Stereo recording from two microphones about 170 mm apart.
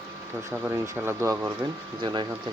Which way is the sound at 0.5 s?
15° right (ahead or behind).